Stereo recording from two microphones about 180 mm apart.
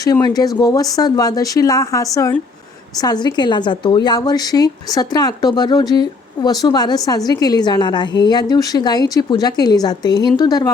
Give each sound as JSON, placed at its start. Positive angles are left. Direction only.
{"t": 0.0, "sound": "a woman's voice", "side_deg": 20}